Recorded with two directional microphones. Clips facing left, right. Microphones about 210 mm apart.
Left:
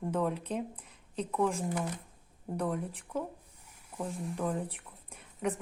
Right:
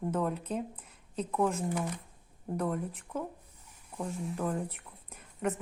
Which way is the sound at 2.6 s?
5° right (ahead or behind).